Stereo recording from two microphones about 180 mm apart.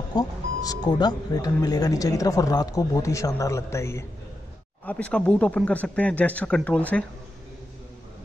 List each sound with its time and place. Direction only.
0.1 s speech: 20° left (ahead or behind)